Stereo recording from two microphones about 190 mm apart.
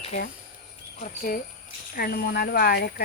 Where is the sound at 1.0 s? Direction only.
45° left (ahead or behind).